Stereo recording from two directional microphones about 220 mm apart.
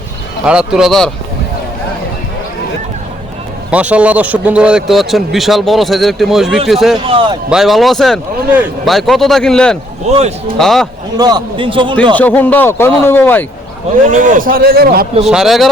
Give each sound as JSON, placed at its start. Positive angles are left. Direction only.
{"t": 0.4, "sound": "a man's voice", "side_deg": -5}
{"t": 3.7, "sound": "a man's voice", "side_deg": -5}
{"t": 7.0, "sound": "a man's voice", "side_deg": -25}
{"t": 7.5, "sound": "a man's voice", "side_deg": 0}
{"t": 10.1, "sound": "a man's voice", "side_deg": -30}
{"t": 10.6, "sound": "a man's voice", "side_deg": 0}
{"t": 11.2, "sound": "a man's voice", "side_deg": -20}
{"t": 12.1, "sound": "speech", "side_deg": 5}
{"t": 14.1, "sound": "a man's voice", "side_deg": -35}
{"t": 15.2, "sound": "a man's voice", "side_deg": 0}